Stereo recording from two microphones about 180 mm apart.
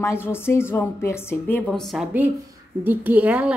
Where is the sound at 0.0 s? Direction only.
15° left (ahead or behind).